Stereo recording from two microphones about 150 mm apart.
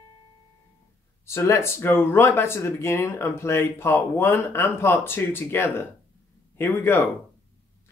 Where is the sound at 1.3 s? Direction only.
20° left (ahead or behind).